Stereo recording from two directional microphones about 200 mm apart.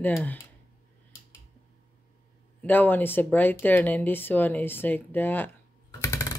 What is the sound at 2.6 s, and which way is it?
Speech, 10° left (ahead or behind).